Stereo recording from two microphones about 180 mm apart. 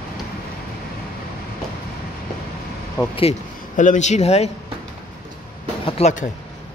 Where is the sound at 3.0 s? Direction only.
20° left (ahead or behind).